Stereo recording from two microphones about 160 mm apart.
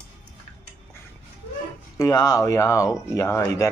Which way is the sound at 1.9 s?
20° left (ahead or behind).